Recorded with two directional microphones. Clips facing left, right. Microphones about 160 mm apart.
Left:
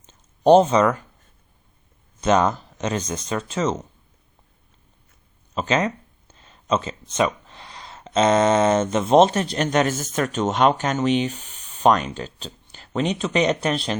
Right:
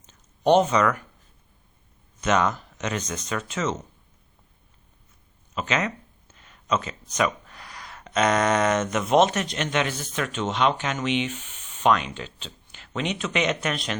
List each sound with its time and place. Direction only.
0.0 s a sound: 30° left (ahead or behind)
2.2 s speech: 30° left (ahead or behind)
5.5 s speech: 35° left (ahead or behind)